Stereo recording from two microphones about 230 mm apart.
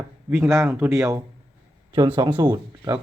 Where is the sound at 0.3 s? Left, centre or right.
Centre.